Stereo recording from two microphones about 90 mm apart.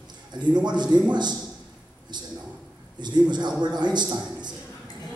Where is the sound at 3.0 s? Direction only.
55° right (ahead or behind).